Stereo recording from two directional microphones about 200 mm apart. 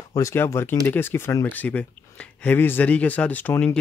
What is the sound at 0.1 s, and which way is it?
Speech, 15° left (ahead or behind).